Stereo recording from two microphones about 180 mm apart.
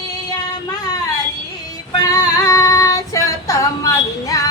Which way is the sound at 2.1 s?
20° left (ahead or behind).